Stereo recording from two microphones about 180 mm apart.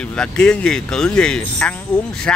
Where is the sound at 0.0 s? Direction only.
5° left (ahead or behind).